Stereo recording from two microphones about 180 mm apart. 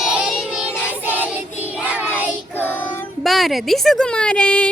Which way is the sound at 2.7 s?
10° left (ahead or behind).